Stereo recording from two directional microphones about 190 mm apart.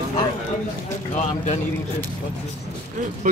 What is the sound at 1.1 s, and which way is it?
Speech, 40° left (ahead or behind).